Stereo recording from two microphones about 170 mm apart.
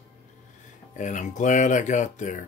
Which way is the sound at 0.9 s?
50° left (ahead or behind).